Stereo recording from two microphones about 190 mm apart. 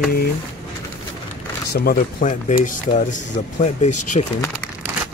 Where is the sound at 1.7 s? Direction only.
55° left (ahead or behind).